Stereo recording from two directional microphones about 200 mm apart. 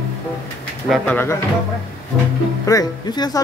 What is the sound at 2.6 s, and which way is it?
Speech, 20° left (ahead or behind).